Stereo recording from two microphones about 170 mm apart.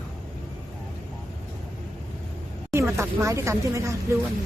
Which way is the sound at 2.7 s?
15° right (ahead or behind).